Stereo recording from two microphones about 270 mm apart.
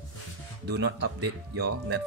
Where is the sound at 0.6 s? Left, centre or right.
Right.